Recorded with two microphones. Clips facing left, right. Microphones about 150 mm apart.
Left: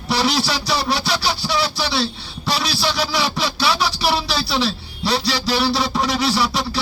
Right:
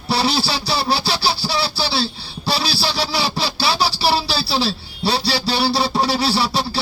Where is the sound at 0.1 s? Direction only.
30° right (ahead or behind).